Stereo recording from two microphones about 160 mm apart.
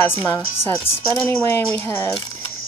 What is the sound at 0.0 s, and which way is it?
Speech, 15° left (ahead or behind).